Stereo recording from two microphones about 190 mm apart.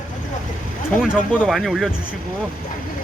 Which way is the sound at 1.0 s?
Centre (ahead or behind).